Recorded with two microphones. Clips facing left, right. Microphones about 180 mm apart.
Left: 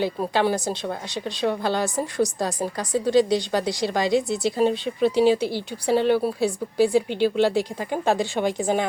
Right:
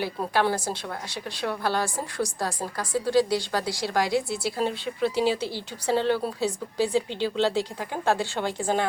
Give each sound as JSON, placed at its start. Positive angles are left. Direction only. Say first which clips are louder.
{"t": 0.0, "sound": "a woman's voice", "louder": "left 3 dB", "side_deg": 15}